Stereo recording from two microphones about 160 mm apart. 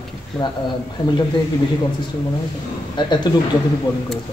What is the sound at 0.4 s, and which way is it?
Speech, 25° left (ahead or behind).